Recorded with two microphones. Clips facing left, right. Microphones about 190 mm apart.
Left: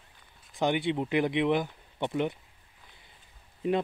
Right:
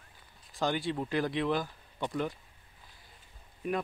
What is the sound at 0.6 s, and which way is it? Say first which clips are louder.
Speech: left 4 dB; 20° left (ahead or behind).